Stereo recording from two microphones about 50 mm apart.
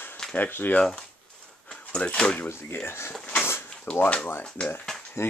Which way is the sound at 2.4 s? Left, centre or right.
Left.